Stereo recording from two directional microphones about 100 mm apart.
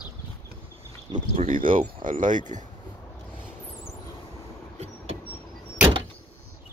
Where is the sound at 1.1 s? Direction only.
55° right (ahead or behind).